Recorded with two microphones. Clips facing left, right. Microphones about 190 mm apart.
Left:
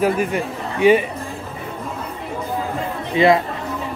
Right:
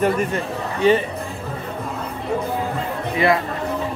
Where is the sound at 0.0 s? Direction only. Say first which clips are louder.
Left 1 dB; 10° left (ahead or behind).